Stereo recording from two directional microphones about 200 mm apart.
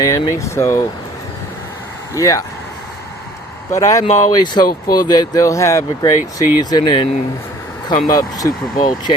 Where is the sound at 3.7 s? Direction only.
15° left (ahead or behind).